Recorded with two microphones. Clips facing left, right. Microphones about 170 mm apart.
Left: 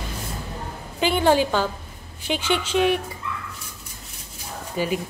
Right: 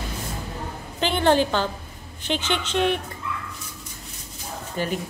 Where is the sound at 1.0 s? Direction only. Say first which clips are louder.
Left 1 dB; 10° left (ahead or behind).